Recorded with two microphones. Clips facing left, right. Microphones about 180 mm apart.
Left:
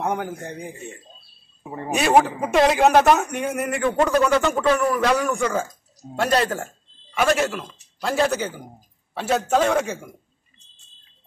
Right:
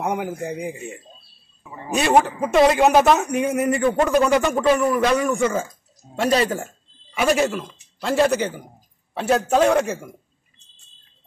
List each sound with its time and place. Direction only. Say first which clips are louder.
0.0 s speech: right 1 dB; 5° right (ahead or behind)
1.6 s speech: left 6 dB; 50° left (ahead or behind)
2.0 s speech: even; centre (ahead or behind)
4.1 s a man's voice: right 1 dB; 15° right (ahead or behind)